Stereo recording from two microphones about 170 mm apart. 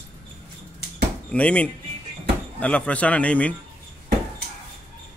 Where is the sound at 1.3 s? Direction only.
5° left (ahead or behind).